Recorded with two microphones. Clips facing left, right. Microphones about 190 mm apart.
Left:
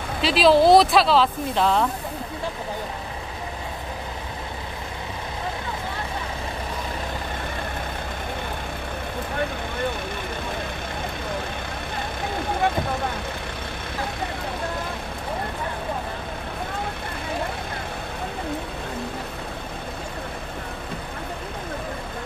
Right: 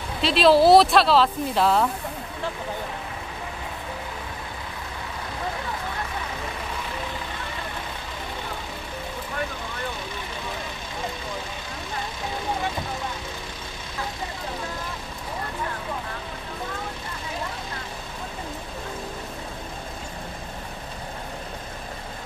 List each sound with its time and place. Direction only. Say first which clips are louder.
0.2 s speech: even; centre (ahead or behind)
12.6 s vehicle: left 6 dB; 60° left (ahead or behind)